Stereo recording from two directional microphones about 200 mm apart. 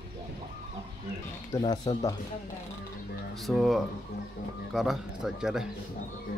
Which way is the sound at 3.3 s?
Centre (ahead or behind).